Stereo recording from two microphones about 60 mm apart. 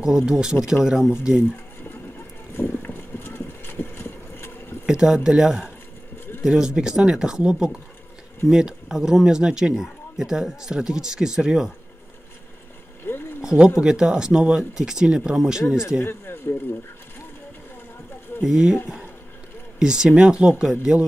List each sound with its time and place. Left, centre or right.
0.0 s speech: centre
1.9 s boat: left
4.8 s speech: centre
13.0 s a sound: left
13.4 s a sound: centre
13.7 s speech: centre
16.0 s speech: left
18.4 s speech: centre
19.8 s speech: centre